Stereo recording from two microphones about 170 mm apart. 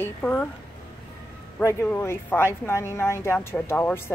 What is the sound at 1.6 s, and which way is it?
Speech, 15° left (ahead or behind).